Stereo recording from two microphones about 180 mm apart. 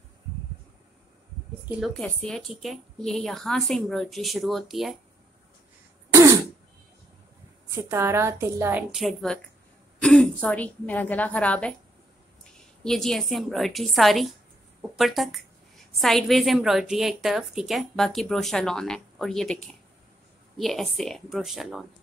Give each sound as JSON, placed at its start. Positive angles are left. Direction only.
{"t": 1.8, "sound": "a woman's voice", "side_deg": 5}
{"t": 6.0, "sound": "throat clearing", "side_deg": -15}
{"t": 7.7, "sound": "a woman's voice", "side_deg": -15}
{"t": 8.9, "sound": "a woman's voice", "side_deg": 0}
{"t": 12.8, "sound": "a woman's voice", "side_deg": 5}